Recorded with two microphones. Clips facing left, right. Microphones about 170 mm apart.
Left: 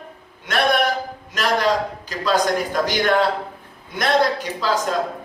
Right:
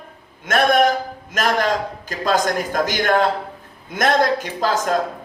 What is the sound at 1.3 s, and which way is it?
Speech, 45° right (ahead or behind).